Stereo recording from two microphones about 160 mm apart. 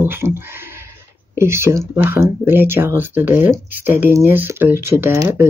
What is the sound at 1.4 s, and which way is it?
Speech, 15° right (ahead or behind).